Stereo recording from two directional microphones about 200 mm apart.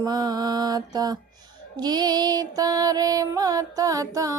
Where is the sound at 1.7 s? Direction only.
20° right (ahead or behind).